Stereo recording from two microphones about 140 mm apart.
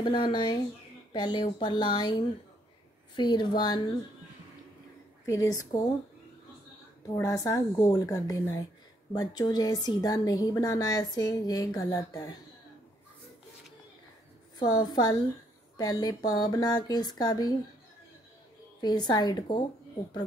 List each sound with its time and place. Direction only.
0.0 s speech: 35° left (ahead or behind)
5.2 s a woman's voice: 20° left (ahead or behind)
7.2 s a woman's voice: 25° left (ahead or behind)
14.6 s a woman's voice: 30° left (ahead or behind)
18.8 s speech: 30° left (ahead or behind)